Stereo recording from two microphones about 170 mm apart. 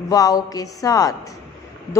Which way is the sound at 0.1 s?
20° left (ahead or behind).